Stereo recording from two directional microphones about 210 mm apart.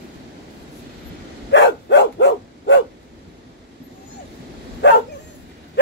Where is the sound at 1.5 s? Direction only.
60° left (ahead or behind).